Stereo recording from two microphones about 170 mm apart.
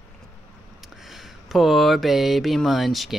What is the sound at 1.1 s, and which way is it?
Mantra, centre (ahead or behind).